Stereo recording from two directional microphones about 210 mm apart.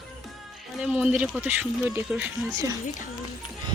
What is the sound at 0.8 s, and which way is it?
Speech, 5° right (ahead or behind).